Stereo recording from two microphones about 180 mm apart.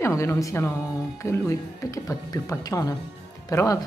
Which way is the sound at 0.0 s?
15° left (ahead or behind).